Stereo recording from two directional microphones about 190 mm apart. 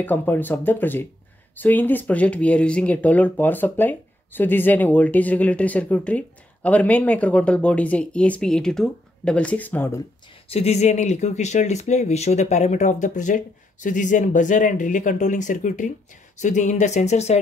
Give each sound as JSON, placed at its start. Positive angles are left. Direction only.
{"t": 0.0, "sound": "speech", "side_deg": 10}
{"t": 10.5, "sound": "speech", "side_deg": 35}